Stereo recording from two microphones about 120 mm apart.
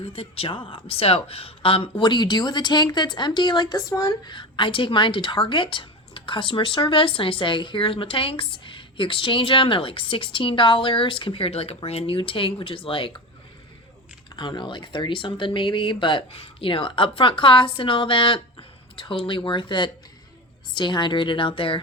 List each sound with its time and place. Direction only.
0.0 s speech: 50° left (ahead or behind)
14.3 s a woman's voice: 40° left (ahead or behind)